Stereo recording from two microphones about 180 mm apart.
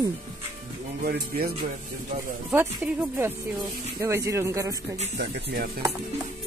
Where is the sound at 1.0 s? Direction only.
55° right (ahead or behind).